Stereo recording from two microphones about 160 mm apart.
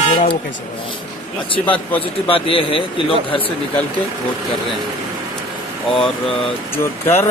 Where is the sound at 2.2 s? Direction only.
35° left (ahead or behind).